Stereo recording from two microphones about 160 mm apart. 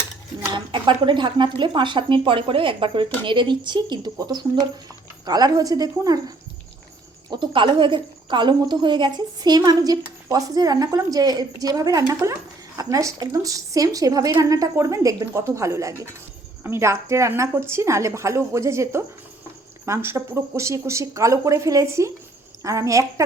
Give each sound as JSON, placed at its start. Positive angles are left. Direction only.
{"t": 0.5, "sound": "a woman's voice", "side_deg": -30}